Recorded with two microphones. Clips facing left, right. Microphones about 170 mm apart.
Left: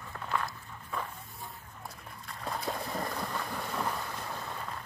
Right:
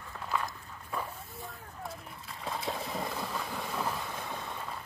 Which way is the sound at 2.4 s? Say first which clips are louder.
Even; centre (ahead or behind).